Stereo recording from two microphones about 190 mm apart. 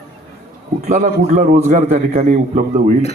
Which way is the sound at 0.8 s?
40° right (ahead or behind).